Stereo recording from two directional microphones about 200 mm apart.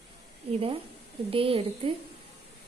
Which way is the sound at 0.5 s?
30° right (ahead or behind).